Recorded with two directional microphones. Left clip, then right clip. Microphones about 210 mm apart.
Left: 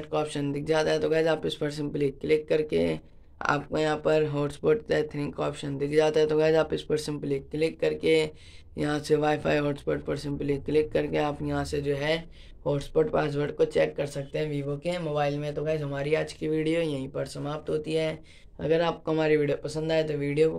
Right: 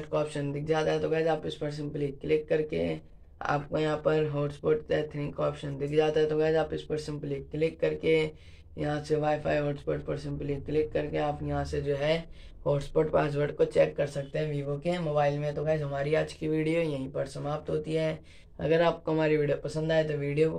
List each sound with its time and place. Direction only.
0.1 s speech: 35° left (ahead or behind)
12.6 s speech: 25° left (ahead or behind)
18.6 s speech: 25° left (ahead or behind)